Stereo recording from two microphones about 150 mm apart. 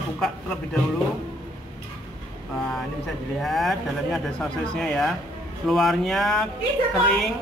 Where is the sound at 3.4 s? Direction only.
Centre (ahead or behind).